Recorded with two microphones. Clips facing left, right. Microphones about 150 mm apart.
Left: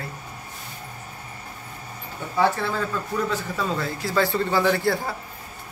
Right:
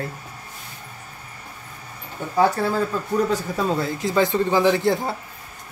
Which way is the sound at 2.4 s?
40° right (ahead or behind).